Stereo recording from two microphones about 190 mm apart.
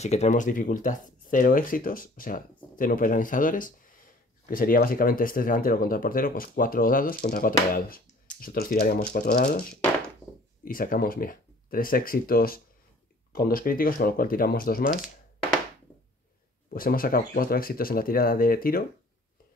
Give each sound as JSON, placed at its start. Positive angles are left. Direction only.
{"t": 0.0, "sound": "speech", "side_deg": 35}
{"t": 16.7, "sound": "speech", "side_deg": 50}